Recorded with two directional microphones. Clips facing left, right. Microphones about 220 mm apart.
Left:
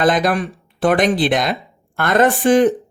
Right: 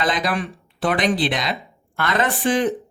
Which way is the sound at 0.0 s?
50° left (ahead or behind).